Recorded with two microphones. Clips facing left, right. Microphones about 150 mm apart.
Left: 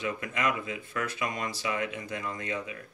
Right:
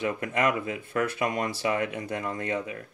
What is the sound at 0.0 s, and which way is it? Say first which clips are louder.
Speech: right 5 dB; 55° right (ahead or behind).